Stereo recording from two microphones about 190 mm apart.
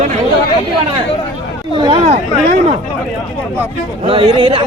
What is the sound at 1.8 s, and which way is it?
Speech, 30° right (ahead or behind).